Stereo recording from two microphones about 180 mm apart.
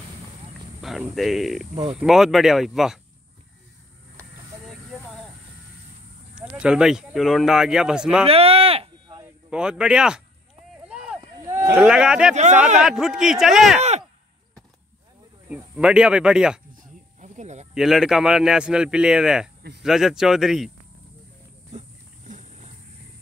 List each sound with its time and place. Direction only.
0.7 s speech: centre (ahead or behind)
6.3 s speech: 5° right (ahead or behind)
8.3 s a sound: 35° right (ahead or behind)
9.2 s a man's voice: 5° right (ahead or behind)
10.8 s a sound: 5° right (ahead or behind)
11.8 s speech: 5° right (ahead or behind)
13.7 s a sound: 40° right (ahead or behind)
15.4 s speech: 5° right (ahead or behind)
16.8 s snake: 40° right (ahead or behind)
17.7 s speech: centre (ahead or behind)
22.3 s dog: 40° right (ahead or behind)